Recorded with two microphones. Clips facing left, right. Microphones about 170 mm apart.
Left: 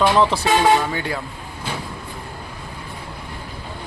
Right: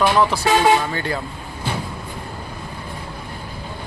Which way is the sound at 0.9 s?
10° left (ahead or behind).